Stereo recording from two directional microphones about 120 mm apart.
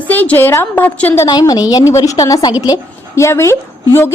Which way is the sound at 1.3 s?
35° left (ahead or behind).